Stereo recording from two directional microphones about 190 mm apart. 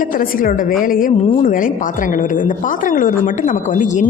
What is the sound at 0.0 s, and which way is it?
A woman's voice, 45° left (ahead or behind).